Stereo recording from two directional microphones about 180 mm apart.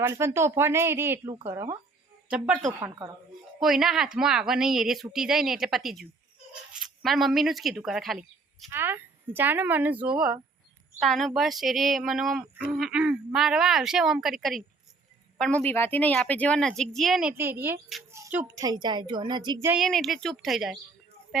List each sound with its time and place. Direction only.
0.0 s speech: 15° right (ahead or behind)
3.6 s a woman's voice: centre (ahead or behind)
8.7 s a woman's voice: 10° right (ahead or behind)
18.6 s a woman's voice: 25° right (ahead or behind)
19.6 s a woman's voice: centre (ahead or behind)